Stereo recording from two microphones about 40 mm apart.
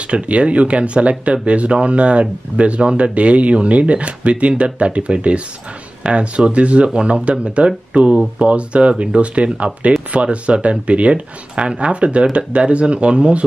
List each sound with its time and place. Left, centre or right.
0.1 s speech: right